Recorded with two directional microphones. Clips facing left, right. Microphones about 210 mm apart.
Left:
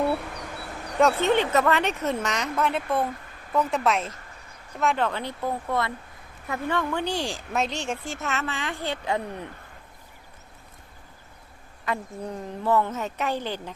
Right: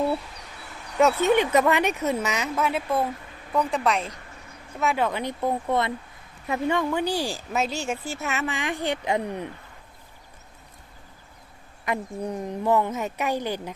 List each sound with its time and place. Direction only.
0.0 s a sound: 60° left (ahead or behind)
1.3 s a woman's voice: 10° right (ahead or behind)
11.9 s speech: 15° right (ahead or behind)